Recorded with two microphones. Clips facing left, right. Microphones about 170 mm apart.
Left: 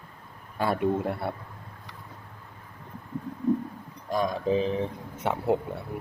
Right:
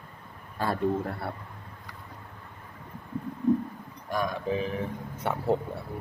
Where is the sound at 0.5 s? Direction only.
20° left (ahead or behind).